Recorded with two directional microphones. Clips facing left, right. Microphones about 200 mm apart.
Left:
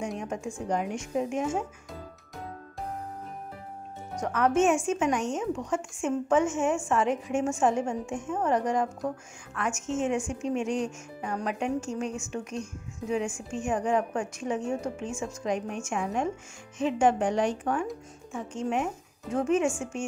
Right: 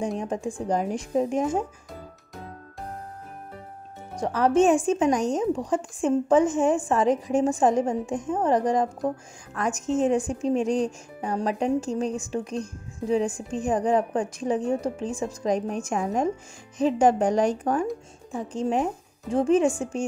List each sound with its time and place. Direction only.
0.2 s speech: 35° right (ahead or behind)
4.2 s speech: 35° right (ahead or behind)